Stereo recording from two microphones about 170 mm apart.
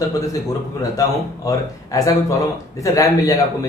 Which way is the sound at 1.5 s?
20° left (ahead or behind).